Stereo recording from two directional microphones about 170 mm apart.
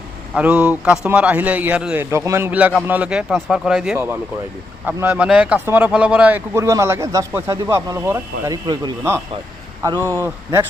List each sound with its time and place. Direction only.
0.3 s a man's voice: 5° right (ahead or behind)